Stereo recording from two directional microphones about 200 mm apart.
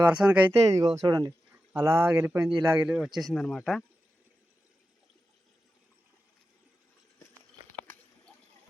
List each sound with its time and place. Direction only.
0.1 s speech: 5° right (ahead or behind)
0.8 s speech: 20° right (ahead or behind); by 3.8 s centre (ahead or behind)